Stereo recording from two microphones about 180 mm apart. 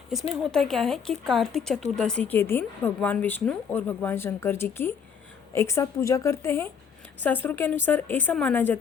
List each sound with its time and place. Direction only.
0.1 s speech: centre (ahead or behind)